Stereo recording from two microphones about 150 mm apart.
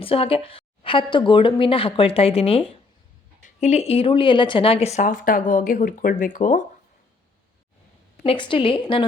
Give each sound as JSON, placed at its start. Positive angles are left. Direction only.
{"t": 0.0, "sound": "a woman's voice", "side_deg": 40}
{"t": 8.2, "sound": "a woman's voice", "side_deg": 35}